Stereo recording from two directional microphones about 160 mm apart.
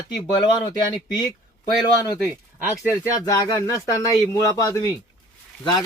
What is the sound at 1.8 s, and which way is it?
Speech, 25° left (ahead or behind).